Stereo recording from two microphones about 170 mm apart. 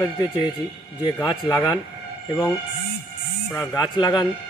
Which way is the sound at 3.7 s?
25° left (ahead or behind).